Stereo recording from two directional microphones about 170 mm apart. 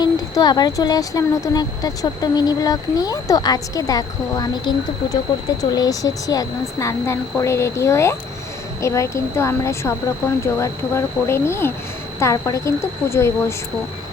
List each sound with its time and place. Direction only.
0.0 s speech: 25° left (ahead or behind)
5.7 s speech: 20° left (ahead or behind)